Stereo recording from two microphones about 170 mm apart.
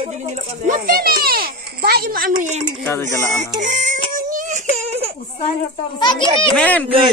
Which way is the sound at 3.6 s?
50° right (ahead or behind).